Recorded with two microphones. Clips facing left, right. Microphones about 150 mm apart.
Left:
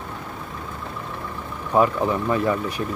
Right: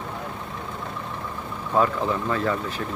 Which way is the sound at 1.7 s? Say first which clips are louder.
Left 3 dB; 15° left (ahead or behind).